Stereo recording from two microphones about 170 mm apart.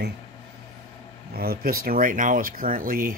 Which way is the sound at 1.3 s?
65° right (ahead or behind).